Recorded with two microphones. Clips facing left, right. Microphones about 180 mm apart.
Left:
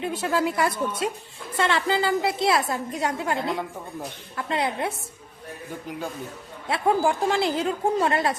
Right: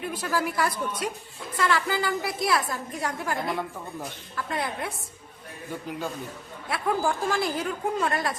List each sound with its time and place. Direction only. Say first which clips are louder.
0.0 s a woman's voice: left 4 dB; 25° left (ahead or behind)
6.7 s a woman's voice: left 4 dB; 25° left (ahead or behind)